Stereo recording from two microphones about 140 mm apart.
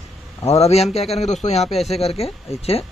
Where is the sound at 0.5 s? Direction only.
45° left (ahead or behind).